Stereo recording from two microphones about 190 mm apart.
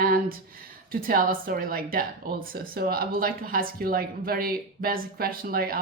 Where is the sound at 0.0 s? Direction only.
50° right (ahead or behind).